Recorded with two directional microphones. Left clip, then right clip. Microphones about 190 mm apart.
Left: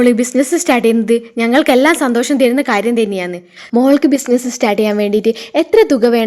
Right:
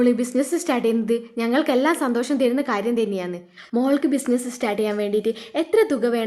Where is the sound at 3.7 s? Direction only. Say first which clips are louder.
Left 10 dB; 40° left (ahead or behind).